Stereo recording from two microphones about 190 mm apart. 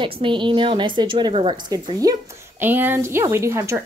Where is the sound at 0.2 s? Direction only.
25° right (ahead or behind).